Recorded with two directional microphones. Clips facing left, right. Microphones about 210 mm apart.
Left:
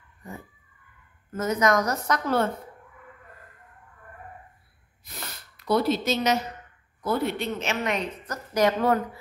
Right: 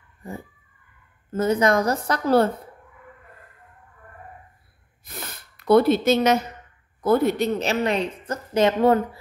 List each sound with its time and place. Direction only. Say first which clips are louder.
1.3 s a woman's voice: right 4 dB; 30° right (ahead or behind)
5.0 s snort: right 3 dB; 55° right (ahead or behind)
7.0 s a woman's voice: right 7 dB; 50° right (ahead or behind); by 9.2 s 25° right (ahead or behind)